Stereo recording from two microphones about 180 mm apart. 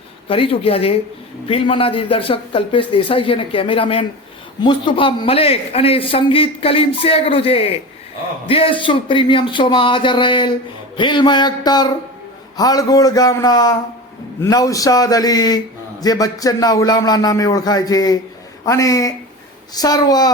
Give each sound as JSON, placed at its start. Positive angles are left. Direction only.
{"t": 0.3, "sound": "a man's voice", "side_deg": 30}